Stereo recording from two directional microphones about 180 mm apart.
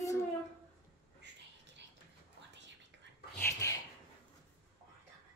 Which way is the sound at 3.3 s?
15° left (ahead or behind).